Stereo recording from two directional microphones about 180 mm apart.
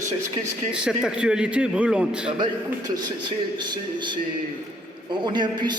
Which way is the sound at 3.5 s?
25° right (ahead or behind).